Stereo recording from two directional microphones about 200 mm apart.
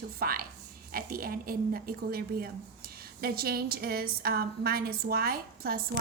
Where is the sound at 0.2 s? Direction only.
45° right (ahead or behind).